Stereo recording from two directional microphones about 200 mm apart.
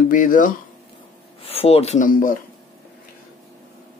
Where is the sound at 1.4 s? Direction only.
30° left (ahead or behind).